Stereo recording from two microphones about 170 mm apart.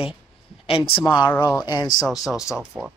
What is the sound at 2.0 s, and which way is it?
Speech, centre (ahead or behind).